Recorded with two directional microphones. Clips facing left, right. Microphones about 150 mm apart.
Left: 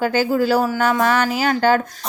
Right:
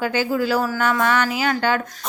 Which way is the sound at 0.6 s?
30° left (ahead or behind).